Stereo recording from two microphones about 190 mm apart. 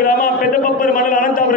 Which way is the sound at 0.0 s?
50° left (ahead or behind).